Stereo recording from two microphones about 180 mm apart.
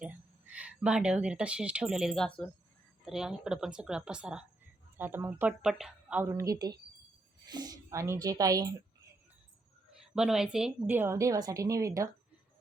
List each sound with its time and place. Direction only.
0.0 s a woman's voice: 5° right (ahead or behind)
9.9 s a woman's voice: centre (ahead or behind)